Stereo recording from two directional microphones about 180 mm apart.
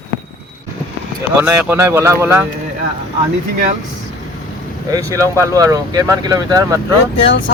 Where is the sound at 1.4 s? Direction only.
10° right (ahead or behind).